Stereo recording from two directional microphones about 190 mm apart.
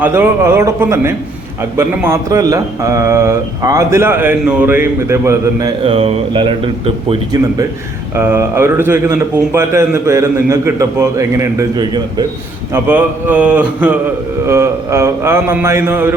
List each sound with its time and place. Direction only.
0.0 s a man's voice: 10° right (ahead or behind)
5.8 s speech: 30° right (ahead or behind)
8.1 s a man's voice: 15° right (ahead or behind)